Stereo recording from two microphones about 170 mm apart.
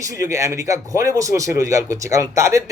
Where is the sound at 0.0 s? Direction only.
20° right (ahead or behind).